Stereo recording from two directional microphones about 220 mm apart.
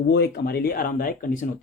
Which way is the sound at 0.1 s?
45° left (ahead or behind).